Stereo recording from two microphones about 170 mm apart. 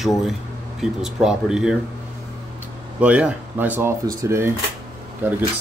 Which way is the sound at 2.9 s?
10° right (ahead or behind).